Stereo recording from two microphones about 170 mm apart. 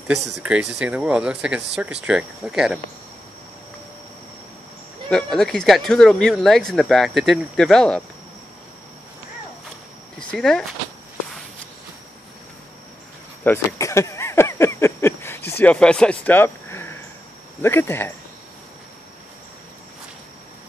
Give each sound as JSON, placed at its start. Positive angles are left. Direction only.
{"t": 0.4, "sound": "speech", "side_deg": -5}
{"t": 5.1, "sound": "speech", "side_deg": 5}
{"t": 10.1, "sound": "speech", "side_deg": 5}
{"t": 13.4, "sound": "a sound", "side_deg": 15}
{"t": 17.6, "sound": "speech", "side_deg": 15}